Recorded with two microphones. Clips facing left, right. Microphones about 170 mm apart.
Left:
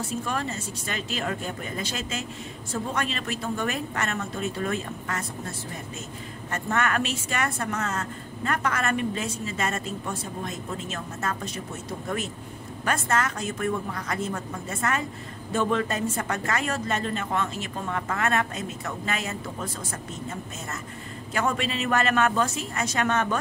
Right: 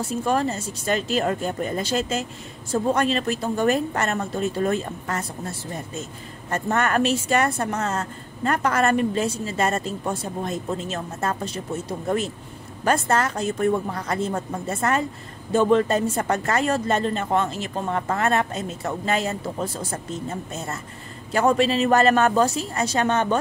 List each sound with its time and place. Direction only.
0.2 s speech: 35° right (ahead or behind)
6.5 s speech: 35° right (ahead or behind)
12.8 s speech: 35° right (ahead or behind)